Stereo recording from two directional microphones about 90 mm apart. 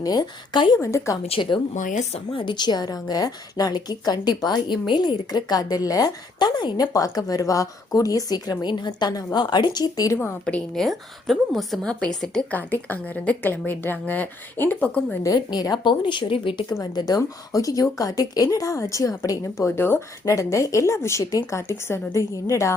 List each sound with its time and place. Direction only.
0.0 s a woman's voice: 50° left (ahead or behind)
0.8 s speech: 35° left (ahead or behind)
1.3 s a woman's voice: 65° left (ahead or behind)
6.9 s a woman's voice: 45° left (ahead or behind)
10.4 s a woman's voice: 5° left (ahead or behind)
12.5 s a woman's voice: 20° left (ahead or behind)
15.2 s a woman's voice: 50° left (ahead or behind); by 16.6 s 75° left (ahead or behind)
16.9 s a woman's voice: 50° left (ahead or behind)
17.2 s a woman's voice: 40° left (ahead or behind)